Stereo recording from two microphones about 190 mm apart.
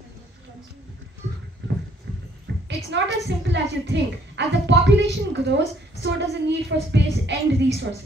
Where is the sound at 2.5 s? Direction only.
75° right (ahead or behind).